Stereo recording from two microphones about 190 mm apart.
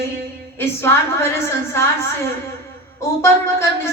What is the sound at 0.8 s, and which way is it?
Speech, 15° left (ahead or behind).